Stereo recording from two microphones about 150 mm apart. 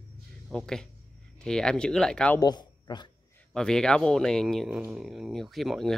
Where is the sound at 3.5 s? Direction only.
5° left (ahead or behind).